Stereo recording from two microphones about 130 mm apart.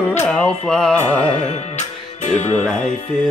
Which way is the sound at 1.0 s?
65° left (ahead or behind).